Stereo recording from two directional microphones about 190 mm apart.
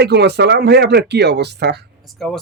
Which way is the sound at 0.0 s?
60° right (ahead or behind).